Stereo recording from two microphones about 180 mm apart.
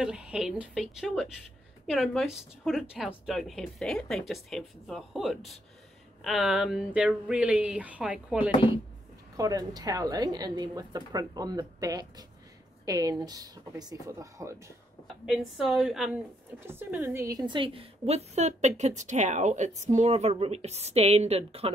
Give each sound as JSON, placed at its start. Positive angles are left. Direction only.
{"t": 0.0, "sound": "speech", "side_deg": -5}
{"t": 9.4, "sound": "a woman's voice", "side_deg": -20}
{"t": 15.2, "sound": "speech", "side_deg": 0}
{"t": 16.5, "sound": "a woman's voice", "side_deg": -15}